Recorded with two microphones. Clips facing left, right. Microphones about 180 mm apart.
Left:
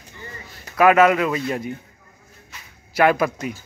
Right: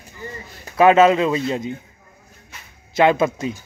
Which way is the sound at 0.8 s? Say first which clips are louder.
Right 2 dB; 25° right (ahead or behind).